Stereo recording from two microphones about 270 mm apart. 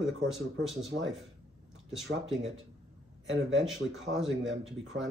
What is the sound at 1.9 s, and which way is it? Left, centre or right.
Speech, centre.